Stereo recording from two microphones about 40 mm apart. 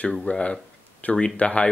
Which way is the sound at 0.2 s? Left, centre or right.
Left.